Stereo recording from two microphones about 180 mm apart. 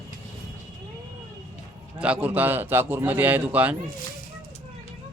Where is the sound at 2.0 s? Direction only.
10° right (ahead or behind).